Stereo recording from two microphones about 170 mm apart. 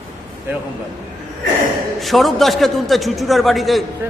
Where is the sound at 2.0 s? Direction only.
Centre (ahead or behind).